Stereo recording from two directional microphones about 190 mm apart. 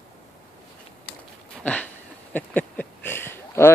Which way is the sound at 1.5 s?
5° left (ahead or behind).